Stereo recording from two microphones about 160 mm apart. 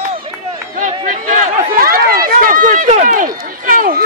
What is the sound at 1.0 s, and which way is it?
Run, 55° right (ahead or behind).